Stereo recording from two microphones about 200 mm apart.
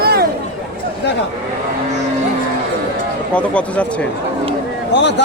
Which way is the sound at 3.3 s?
5° left (ahead or behind).